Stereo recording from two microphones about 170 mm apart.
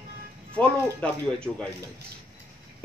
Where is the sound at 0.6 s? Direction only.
5° left (ahead or behind).